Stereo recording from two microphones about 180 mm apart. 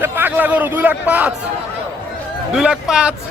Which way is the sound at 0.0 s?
10° right (ahead or behind).